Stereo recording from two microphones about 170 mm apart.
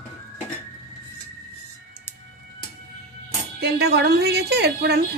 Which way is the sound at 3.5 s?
70° right (ahead or behind).